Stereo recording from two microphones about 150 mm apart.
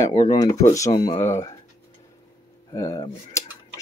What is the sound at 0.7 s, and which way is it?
Speech, 25° left (ahead or behind).